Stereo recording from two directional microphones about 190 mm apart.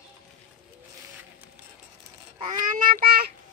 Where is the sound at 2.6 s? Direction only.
45° right (ahead or behind).